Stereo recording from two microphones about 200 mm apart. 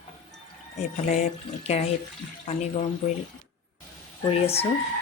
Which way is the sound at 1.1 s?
35° left (ahead or behind).